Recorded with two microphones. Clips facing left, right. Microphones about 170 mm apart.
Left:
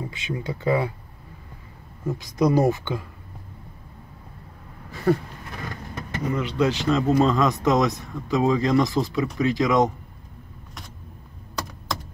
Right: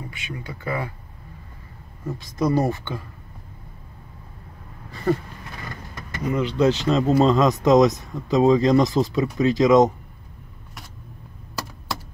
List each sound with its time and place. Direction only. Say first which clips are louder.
0.1 s speech: left 5 dB; 20° left (ahead or behind)
2.0 s speech: left 2 dB; 10° left (ahead or behind)
5.1 s a sound: left 1 dB; centre (ahead or behind)
6.3 s speech: right 4 dB; 20° right (ahead or behind)